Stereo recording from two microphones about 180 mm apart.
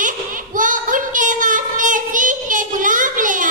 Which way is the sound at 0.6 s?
45° right (ahead or behind).